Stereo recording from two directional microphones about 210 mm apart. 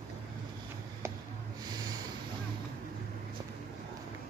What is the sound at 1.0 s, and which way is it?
Snort, 10° right (ahead or behind).